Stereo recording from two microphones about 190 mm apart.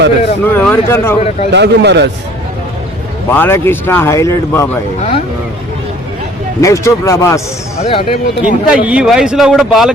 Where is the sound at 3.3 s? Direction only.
10° left (ahead or behind).